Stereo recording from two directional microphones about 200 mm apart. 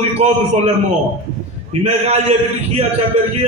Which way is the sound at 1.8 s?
30° right (ahead or behind).